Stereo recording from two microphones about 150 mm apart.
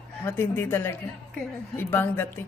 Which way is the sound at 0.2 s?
15° left (ahead or behind).